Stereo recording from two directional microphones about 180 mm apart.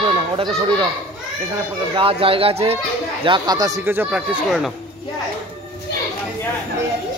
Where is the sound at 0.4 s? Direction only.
25° right (ahead or behind).